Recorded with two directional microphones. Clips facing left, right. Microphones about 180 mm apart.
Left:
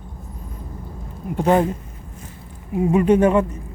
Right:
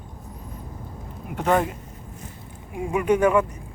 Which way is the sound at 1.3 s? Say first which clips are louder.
Left 4 dB; 30° left (ahead or behind).